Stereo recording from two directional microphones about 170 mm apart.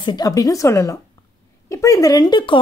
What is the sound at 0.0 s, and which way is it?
Speech, 25° left (ahead or behind).